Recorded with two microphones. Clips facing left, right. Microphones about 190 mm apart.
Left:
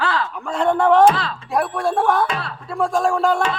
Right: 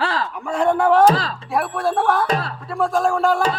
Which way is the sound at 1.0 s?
35° right (ahead or behind).